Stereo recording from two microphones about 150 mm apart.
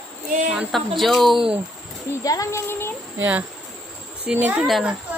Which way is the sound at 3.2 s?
10° right (ahead or behind).